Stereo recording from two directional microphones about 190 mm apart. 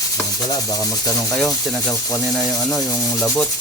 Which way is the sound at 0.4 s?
20° left (ahead or behind).